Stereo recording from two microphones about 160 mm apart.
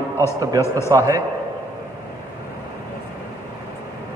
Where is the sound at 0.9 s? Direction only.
20° right (ahead or behind).